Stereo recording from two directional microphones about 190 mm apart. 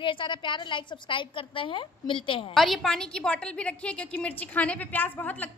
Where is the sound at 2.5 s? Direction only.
Centre (ahead or behind).